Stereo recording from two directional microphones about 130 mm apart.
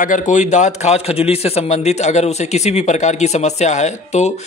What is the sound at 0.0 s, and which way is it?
A man's voice, 80° left.